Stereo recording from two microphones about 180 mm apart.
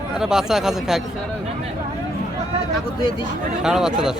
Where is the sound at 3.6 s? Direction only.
5° right (ahead or behind).